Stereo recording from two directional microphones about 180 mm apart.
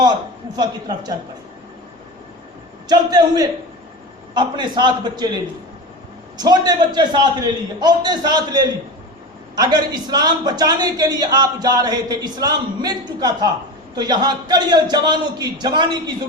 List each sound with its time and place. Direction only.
0.5 s a man's voice: 20° right (ahead or behind)
2.9 s a man's voice: 20° right (ahead or behind)
6.3 s a man's voice: 25° right (ahead or behind)